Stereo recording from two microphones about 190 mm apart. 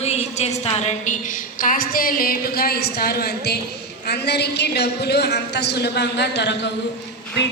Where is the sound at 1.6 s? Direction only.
45° left (ahead or behind); by 6.7 s 65° left (ahead or behind).